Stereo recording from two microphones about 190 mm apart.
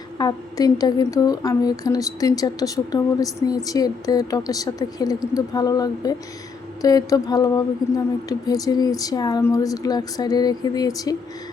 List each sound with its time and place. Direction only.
0.2 s a woman's voice: 20° left (ahead or behind)